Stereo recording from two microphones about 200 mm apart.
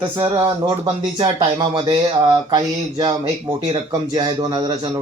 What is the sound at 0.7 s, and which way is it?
Speech, 25° right (ahead or behind).